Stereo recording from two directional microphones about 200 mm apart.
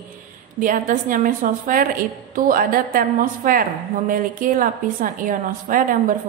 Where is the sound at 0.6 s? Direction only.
40° right (ahead or behind).